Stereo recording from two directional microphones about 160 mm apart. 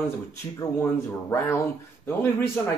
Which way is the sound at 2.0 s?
15° left (ahead or behind).